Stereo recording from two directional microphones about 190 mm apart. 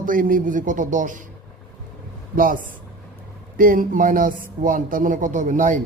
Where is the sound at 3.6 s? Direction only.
45° right (ahead or behind).